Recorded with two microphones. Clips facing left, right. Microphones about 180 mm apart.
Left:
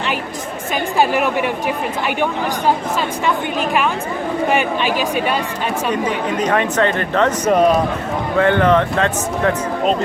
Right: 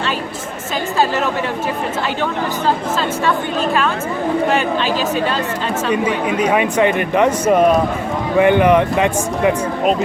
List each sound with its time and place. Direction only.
0.9 s speech: 15° left (ahead or behind)
3.2 s speech: 15° left (ahead or behind)
5.9 s speech: 10° right (ahead or behind)